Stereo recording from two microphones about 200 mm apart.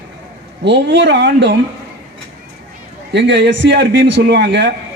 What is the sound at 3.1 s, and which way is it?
A man's voice, 60° right (ahead or behind).